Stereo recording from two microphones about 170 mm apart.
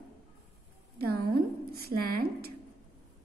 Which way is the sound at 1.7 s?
65° right (ahead or behind).